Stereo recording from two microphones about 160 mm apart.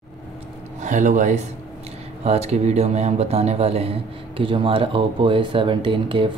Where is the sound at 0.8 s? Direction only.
50° right (ahead or behind).